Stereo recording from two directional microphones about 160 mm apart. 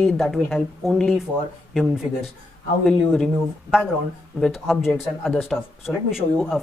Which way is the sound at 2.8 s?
5° left (ahead or behind).